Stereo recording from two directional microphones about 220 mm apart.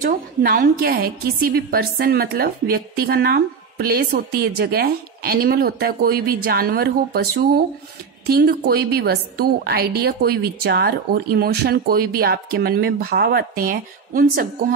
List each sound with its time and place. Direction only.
0.0 s a woman's voice: 40° right (ahead or behind)